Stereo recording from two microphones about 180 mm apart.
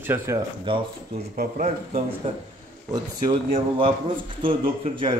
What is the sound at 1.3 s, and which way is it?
Speech, 40° right (ahead or behind).